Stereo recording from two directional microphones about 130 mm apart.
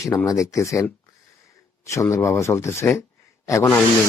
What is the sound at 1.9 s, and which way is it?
Speech, 25° left (ahead or behind).